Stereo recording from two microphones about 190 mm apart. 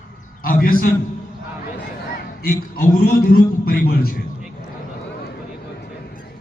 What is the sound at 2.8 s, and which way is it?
A man's voice, 50° left (ahead or behind).